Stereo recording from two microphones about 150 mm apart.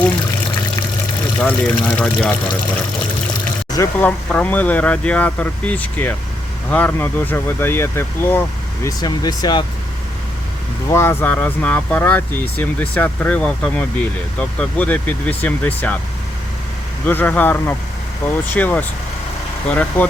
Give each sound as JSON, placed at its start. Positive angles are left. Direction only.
{"t": 1.4, "sound": "speech", "side_deg": 10}
{"t": 3.7, "sound": "speech", "side_deg": 20}
{"t": 4.0, "sound": "speech", "side_deg": 10}
{"t": 10.8, "sound": "speech", "side_deg": 15}
{"t": 17.1, "sound": "speech", "side_deg": 10}